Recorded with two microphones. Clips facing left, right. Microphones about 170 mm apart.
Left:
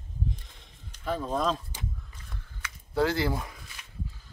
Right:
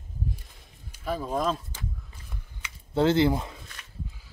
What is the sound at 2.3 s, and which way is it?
Camera, 20° right (ahead or behind).